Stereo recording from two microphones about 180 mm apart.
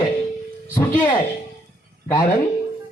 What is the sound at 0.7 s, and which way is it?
Speech, 15° left (ahead or behind).